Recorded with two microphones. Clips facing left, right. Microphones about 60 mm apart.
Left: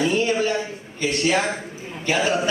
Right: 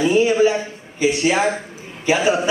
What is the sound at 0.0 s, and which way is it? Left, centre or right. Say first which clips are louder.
A man's voice: right 6 dB; centre.